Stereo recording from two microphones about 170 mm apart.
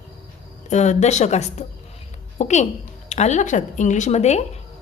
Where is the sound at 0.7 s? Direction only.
40° left (ahead or behind).